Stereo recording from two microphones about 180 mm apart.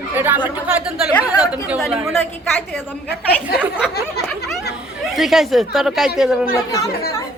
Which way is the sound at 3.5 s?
60° left (ahead or behind).